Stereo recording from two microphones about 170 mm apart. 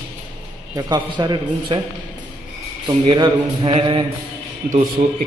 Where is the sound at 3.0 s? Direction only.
25° right (ahead or behind).